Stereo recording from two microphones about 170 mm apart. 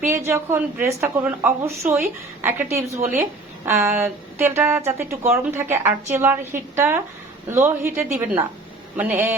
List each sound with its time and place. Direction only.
0.1 s speech: 15° right (ahead or behind)
7.9 s a woman's voice: 5° right (ahead or behind)